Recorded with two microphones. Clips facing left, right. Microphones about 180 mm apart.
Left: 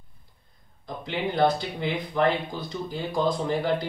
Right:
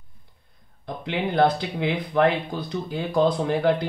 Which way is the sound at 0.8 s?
60° right (ahead or behind).